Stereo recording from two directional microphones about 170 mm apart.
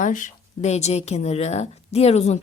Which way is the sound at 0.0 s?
50° left (ahead or behind).